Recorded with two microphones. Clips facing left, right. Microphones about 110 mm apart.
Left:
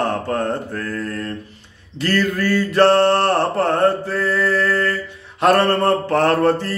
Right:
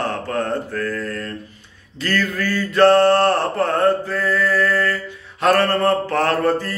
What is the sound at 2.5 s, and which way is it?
Mantra, 25° left (ahead or behind).